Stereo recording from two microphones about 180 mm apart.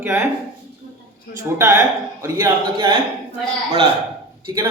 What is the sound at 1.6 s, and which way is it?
A man's voice, 15° right (ahead or behind).